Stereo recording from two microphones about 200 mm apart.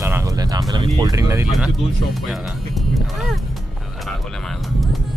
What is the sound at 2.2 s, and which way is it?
Speech, centre (ahead or behind).